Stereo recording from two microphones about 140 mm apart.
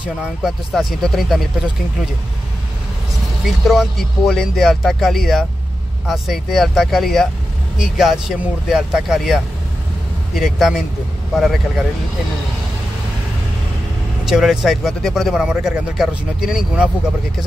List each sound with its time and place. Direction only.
0.0 s speech: 5° right (ahead or behind)
3.4 s speech: centre (ahead or behind)
14.2 s speech: 5° right (ahead or behind)